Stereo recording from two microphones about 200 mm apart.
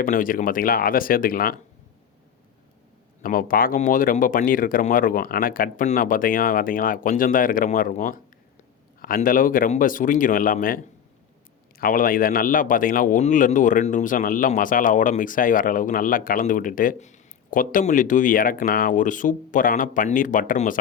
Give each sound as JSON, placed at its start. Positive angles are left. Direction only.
{"t": 0.0, "sound": "speech", "side_deg": 45}
{"t": 3.2, "sound": "speech", "side_deg": 45}
{"t": 11.8, "sound": "speech", "side_deg": 45}